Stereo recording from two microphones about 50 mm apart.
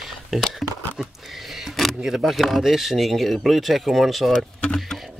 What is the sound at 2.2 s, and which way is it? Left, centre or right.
Speech, centre.